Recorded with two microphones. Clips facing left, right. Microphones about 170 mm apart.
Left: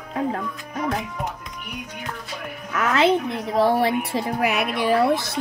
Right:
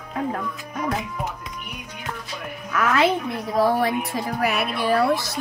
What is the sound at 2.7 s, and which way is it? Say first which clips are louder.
A woman's voice: left 1 dB; 25° left (ahead or behind).